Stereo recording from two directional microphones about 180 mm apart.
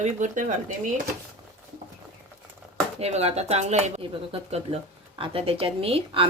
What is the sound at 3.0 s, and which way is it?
Speech, 35° right (ahead or behind).